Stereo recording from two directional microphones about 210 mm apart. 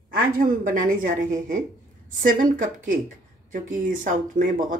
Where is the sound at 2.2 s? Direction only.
40° right (ahead or behind).